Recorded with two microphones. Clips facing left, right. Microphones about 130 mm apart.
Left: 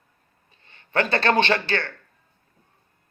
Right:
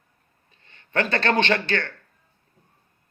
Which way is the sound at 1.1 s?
35° left (ahead or behind).